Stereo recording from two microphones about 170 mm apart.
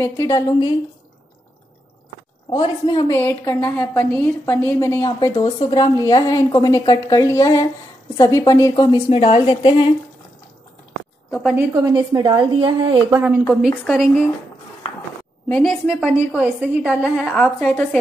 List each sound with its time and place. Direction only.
0.0 s a woman's voice: 20° left (ahead or behind)
2.5 s a woman's voice: 25° left (ahead or behind)
3.2 s a woman's voice: 15° left (ahead or behind)
9.1 s a woman's voice: 35° left (ahead or behind)
11.5 s a woman's voice: 20° right (ahead or behind)
13.5 s a woman's voice: centre (ahead or behind)
15.4 s a woman's voice: 5° left (ahead or behind)